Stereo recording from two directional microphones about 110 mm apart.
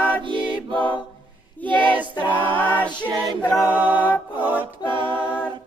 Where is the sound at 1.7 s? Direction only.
50° right (ahead or behind).